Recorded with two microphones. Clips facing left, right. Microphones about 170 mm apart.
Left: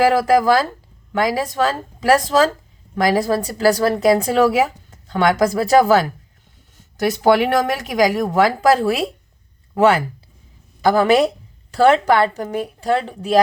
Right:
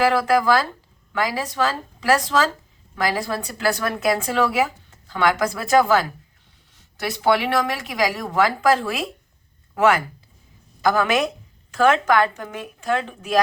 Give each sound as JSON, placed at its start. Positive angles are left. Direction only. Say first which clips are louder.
{"t": 0.0, "sound": "a woman's voice", "louder": "left 4 dB", "side_deg": 40}